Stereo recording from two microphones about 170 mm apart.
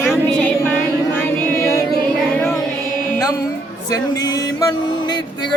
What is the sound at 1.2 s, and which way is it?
Music, 15° left (ahead or behind).